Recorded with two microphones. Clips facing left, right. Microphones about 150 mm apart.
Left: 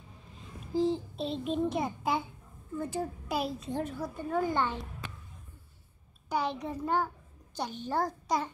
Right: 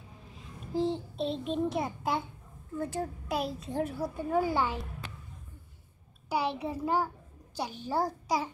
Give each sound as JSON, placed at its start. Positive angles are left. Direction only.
{"t": 0.4, "sound": "a child's voice", "side_deg": 0}
{"t": 6.2, "sound": "a child's voice", "side_deg": -10}